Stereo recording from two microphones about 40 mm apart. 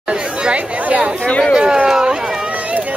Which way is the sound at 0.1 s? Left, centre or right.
Right.